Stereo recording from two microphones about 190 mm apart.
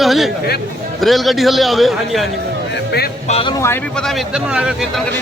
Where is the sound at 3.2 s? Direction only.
35° left (ahead or behind).